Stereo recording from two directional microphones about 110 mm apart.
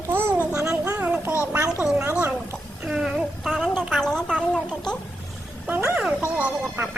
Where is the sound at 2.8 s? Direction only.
5° right (ahead or behind).